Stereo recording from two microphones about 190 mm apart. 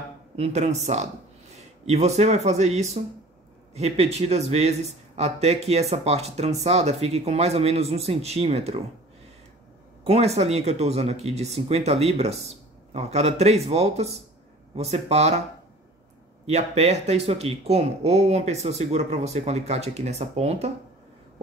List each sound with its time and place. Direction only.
0.4 s a man's voice: 35° right (ahead or behind)
10.0 s a man's voice: 35° right (ahead or behind)
16.4 s a man's voice: 35° right (ahead or behind)